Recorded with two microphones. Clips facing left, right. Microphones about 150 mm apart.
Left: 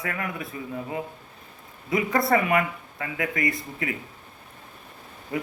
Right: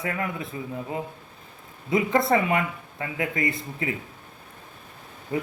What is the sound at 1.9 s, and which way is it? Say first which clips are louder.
Speech: right 1 dB; 25° right (ahead or behind).